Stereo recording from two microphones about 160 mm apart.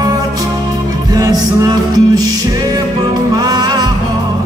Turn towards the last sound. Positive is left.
turn(degrees=-25)  # may be behind; listen again after turning